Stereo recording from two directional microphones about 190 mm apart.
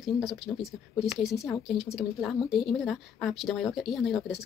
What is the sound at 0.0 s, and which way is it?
A woman's voice, centre (ahead or behind).